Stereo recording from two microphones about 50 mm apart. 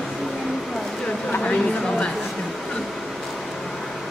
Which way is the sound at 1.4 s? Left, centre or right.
Centre.